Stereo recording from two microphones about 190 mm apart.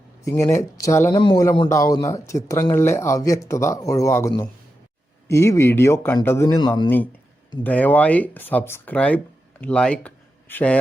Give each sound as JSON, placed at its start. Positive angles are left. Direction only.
{"t": 0.3, "sound": "speech", "side_deg": 15}
{"t": 7.6, "sound": "speech", "side_deg": 10}